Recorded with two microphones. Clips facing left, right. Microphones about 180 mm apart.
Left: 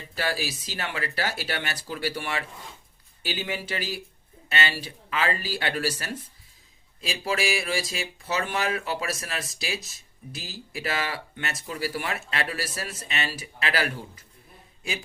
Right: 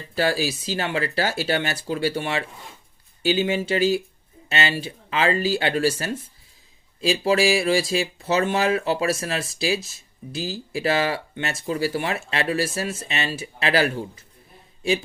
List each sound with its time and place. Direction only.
0.2 s speech: 30° right (ahead or behind)